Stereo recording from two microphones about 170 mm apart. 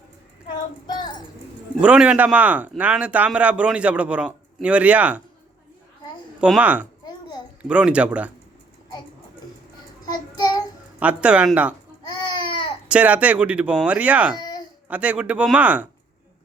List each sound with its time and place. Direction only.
0.9 s child singing: 25° left (ahead or behind)
1.8 s speech: 5° right (ahead or behind)
6.4 s speech: 5° right (ahead or behind)
7.0 s babbling: 25° left (ahead or behind)
7.6 s speech: 5° right (ahead or behind)
10.1 s child singing: 25° left (ahead or behind)
11.0 s speech: 5° right (ahead or behind)
12.0 s a sound: 25° left (ahead or behind)
12.9 s speech: 10° right (ahead or behind)
14.3 s a sound: 25° left (ahead or behind)
14.8 s speech: 10° right (ahead or behind)